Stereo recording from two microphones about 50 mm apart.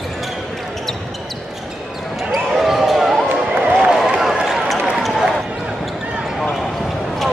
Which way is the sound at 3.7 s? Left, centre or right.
Centre.